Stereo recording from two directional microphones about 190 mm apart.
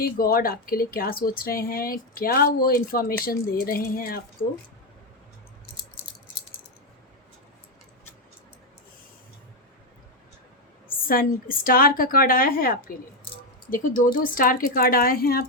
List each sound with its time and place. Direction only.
0.0 s speech: 50° left (ahead or behind)
11.0 s speech: 50° left (ahead or behind)